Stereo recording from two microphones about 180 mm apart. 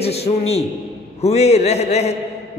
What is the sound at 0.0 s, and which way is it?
A man's voice, 35° left (ahead or behind).